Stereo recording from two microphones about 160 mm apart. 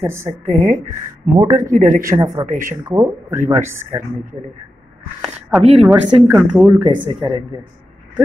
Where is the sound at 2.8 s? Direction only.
20° right (ahead or behind).